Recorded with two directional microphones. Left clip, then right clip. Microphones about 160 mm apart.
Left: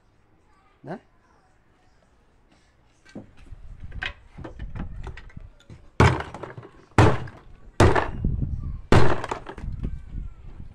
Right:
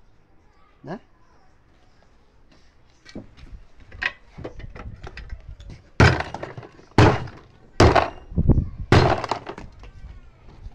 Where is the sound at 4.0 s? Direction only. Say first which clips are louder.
Right 6 dB; 15° right (ahead or behind).